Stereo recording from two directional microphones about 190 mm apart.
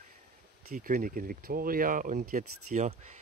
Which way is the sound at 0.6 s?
45° right (ahead or behind).